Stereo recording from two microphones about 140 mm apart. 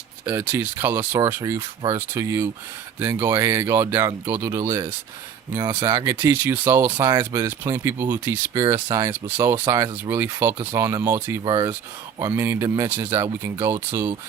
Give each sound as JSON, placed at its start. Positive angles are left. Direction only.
{"t": 0.3, "sound": "speech", "side_deg": -15}
{"t": 5.5, "sound": "speech", "side_deg": -30}
{"t": 6.1, "sound": "speech", "side_deg": -15}
{"t": 11.4, "sound": "speech", "side_deg": -30}
{"t": 12.3, "sound": "speech", "side_deg": -20}